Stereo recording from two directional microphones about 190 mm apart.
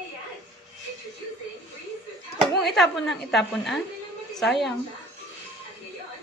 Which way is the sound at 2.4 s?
Centre (ahead or behind).